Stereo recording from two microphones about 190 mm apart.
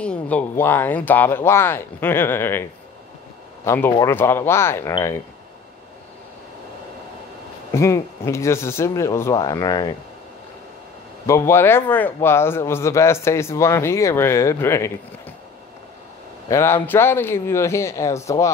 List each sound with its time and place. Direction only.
0.0 s a man's voice: 5° left (ahead or behind)
3.6 s a man's voice: 15° left (ahead or behind)
7.7 s a man's voice: 15° left (ahead or behind)
11.2 s a man's voice: 15° left (ahead or behind)
16.4 s a man's voice: 15° left (ahead or behind)